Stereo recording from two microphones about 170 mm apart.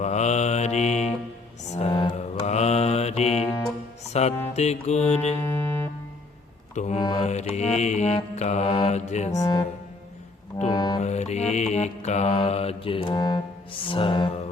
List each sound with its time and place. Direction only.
0.0 s mantra: 40° left (ahead or behind)
1.6 s music: 40° left (ahead or behind)
1.9 s music: 25° left (ahead or behind)
2.5 s mantra: 40° left (ahead or behind)
4.1 s music: 40° left (ahead or behind)
4.5 s mantra: 40° left (ahead or behind)
5.4 s music: 15° left (ahead or behind)
6.7 s mantra: 40° left (ahead or behind)
9.4 s speech: 25° left (ahead or behind)
10.7 s music: 25° left (ahead or behind)
11.0 s mantra: 40° left (ahead or behind)